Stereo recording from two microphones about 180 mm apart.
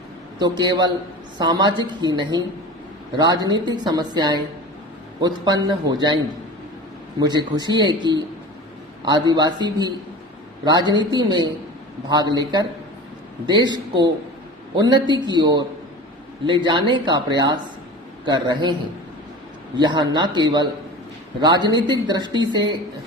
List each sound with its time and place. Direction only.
0.3 s a woman's voice: 25° right (ahead or behind)
7.2 s a woman's voice: 25° right (ahead or behind)
19.8 s a woman's voice: 25° right (ahead or behind)